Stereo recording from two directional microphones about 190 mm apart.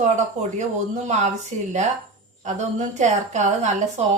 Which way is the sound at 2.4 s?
40° right (ahead or behind).